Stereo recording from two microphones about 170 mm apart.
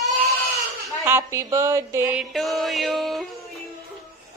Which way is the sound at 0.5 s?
15° right (ahead or behind).